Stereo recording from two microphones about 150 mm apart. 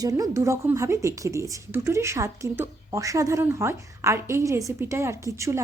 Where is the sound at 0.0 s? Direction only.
25° right (ahead or behind).